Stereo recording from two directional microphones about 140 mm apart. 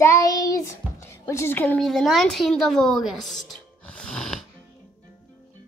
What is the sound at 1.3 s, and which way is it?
A woman's voice, 15° left (ahead or behind).